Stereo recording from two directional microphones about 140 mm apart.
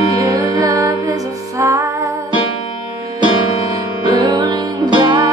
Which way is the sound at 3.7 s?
30° right (ahead or behind).